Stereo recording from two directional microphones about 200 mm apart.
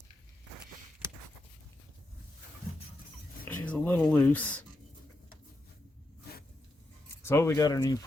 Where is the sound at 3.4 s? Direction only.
10° left (ahead or behind).